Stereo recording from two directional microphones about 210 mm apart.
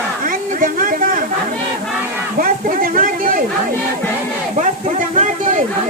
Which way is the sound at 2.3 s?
40° right (ahead or behind).